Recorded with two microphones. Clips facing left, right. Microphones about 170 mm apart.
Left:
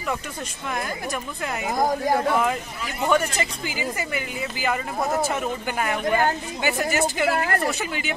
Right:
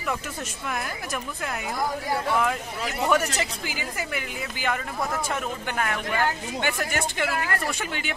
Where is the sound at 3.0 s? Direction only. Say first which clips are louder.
Left 2 dB; 5° right (ahead or behind).